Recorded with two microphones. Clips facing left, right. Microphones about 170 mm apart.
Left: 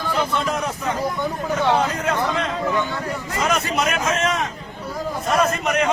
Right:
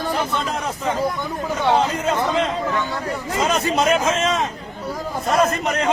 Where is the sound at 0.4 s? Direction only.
25° right (ahead or behind).